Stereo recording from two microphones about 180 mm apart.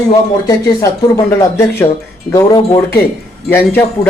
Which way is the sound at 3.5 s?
10° left (ahead or behind).